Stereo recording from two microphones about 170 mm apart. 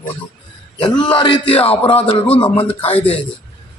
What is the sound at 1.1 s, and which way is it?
A man's voice, 30° left (ahead or behind).